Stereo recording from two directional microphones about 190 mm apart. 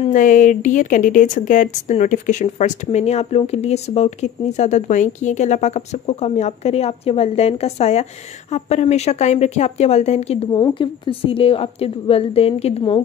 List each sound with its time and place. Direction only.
0.1 s a woman's voice: 45° left (ahead or behind); by 13.0 s 30° left (ahead or behind)